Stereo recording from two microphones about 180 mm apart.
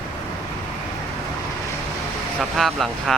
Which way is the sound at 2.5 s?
Centre (ahead or behind).